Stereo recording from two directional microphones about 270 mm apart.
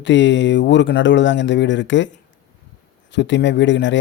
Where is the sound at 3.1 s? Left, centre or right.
Left.